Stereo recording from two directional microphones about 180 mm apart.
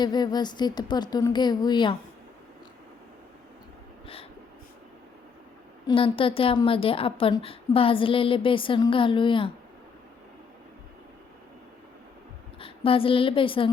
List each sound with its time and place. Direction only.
0.0 s a woman's voice: 25° left (ahead or behind)
4.0 s a sound: 30° left (ahead or behind)
5.9 s a woman's voice: 30° left (ahead or behind)
12.5 s a woman's voice: 30° left (ahead or behind)